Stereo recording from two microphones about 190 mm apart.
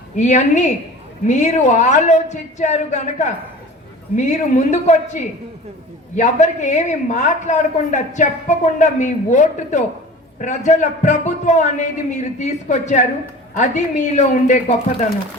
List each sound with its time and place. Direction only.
0.2 s a man's voice: 40° left (ahead or behind)